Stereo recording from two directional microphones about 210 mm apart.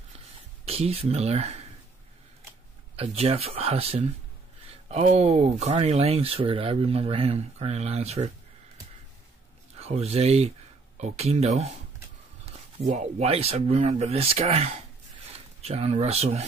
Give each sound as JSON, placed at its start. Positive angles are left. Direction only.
{"t": 0.7, "sound": "speech", "side_deg": -30}
{"t": 3.0, "sound": "speech", "side_deg": -30}
{"t": 9.8, "sound": "speech", "side_deg": -30}